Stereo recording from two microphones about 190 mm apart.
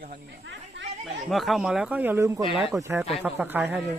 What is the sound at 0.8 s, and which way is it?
Chatter, 75° right (ahead or behind).